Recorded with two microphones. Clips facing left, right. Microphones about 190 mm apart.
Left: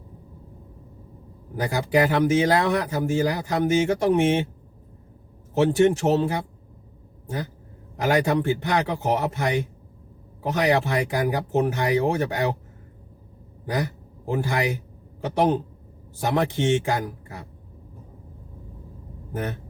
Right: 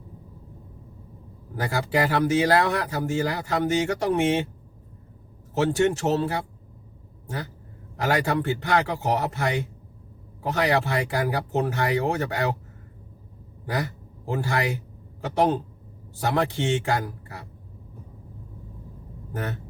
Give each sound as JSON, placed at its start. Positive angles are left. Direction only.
{"t": 1.5, "sound": "speech", "side_deg": 15}
{"t": 5.5, "sound": "speech", "side_deg": 20}
{"t": 7.9, "sound": "speech", "side_deg": 15}
{"t": 13.7, "sound": "speech", "side_deg": 15}